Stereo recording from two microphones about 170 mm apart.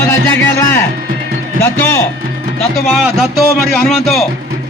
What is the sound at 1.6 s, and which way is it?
Speech, 15° left (ahead or behind).